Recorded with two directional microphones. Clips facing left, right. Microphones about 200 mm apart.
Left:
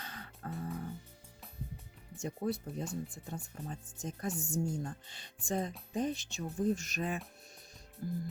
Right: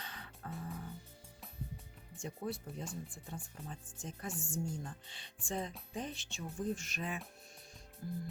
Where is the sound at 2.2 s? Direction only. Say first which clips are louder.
Left 5 dB; 40° left (ahead or behind).